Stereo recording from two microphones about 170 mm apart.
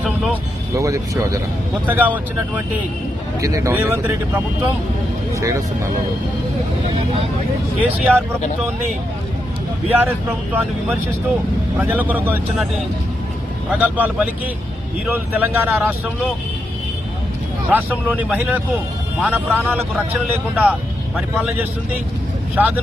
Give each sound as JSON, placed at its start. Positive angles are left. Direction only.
{"t": 0.8, "sound": "speech", "side_deg": -20}
{"t": 5.3, "sound": "music", "side_deg": -20}
{"t": 7.8, "sound": "speech", "side_deg": -10}
{"t": 9.9, "sound": "speech", "side_deg": -10}
{"t": 11.8, "sound": "speech", "side_deg": -10}
{"t": 13.7, "sound": "speech", "side_deg": -10}
{"t": 17.7, "sound": "speech", "side_deg": -10}
{"t": 22.5, "sound": "speech", "side_deg": -10}